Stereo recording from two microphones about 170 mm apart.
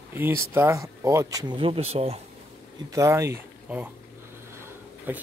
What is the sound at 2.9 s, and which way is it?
Speech, 15° right (ahead or behind).